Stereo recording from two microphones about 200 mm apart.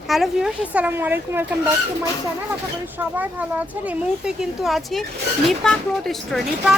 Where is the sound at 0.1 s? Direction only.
Centre (ahead or behind).